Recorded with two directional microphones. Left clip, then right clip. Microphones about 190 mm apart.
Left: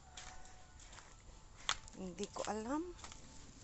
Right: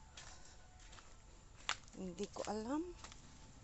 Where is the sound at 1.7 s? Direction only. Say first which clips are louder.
Left 3 dB; 30° left (ahead or behind).